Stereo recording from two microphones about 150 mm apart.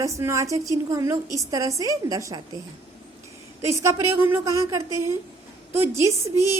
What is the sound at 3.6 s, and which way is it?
A woman's voice, 20° right (ahead or behind).